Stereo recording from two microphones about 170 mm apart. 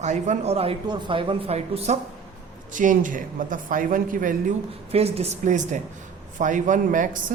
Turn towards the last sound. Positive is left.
turn(degrees=-50)  # may be behind; listen again after turning